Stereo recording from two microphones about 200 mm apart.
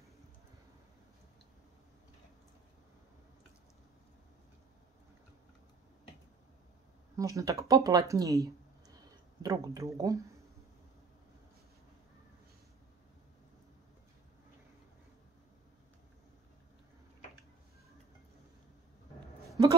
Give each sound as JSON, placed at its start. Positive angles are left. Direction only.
{"t": 7.2, "sound": "speech", "side_deg": -15}